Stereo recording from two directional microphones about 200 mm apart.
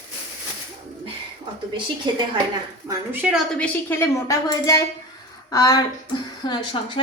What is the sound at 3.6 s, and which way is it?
A woman's voice, 10° left (ahead or behind).